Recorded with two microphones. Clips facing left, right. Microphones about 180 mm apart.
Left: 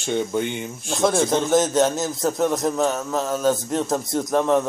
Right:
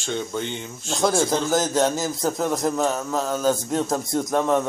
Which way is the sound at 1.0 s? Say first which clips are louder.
Left 2 dB; centre (ahead or behind).